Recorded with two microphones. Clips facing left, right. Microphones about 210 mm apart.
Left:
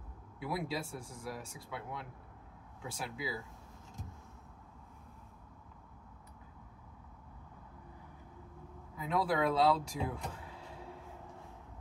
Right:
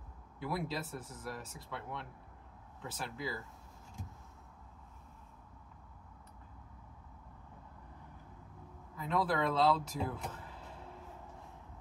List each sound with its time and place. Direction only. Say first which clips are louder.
0.4 s speech: left 1 dB; 5° left (ahead or behind)
8.9 s speech: left 1 dB; 5° left (ahead or behind)